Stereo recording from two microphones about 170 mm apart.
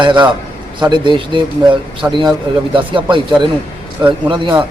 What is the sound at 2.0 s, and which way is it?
Speech, 15° right (ahead or behind).